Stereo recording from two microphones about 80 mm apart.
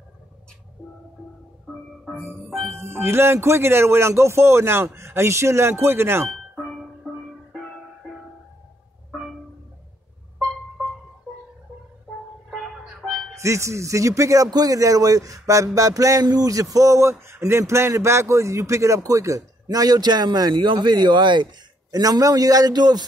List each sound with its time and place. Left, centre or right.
2.1 s music: right
2.5 s speech: centre
2.8 s speech: right
6.2 s music: centre
7.0 s music: centre
12.4 s music: centre
13.4 s speech: right
20.6 s a man's voice: right